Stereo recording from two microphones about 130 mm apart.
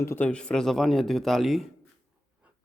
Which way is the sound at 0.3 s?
5° left (ahead or behind).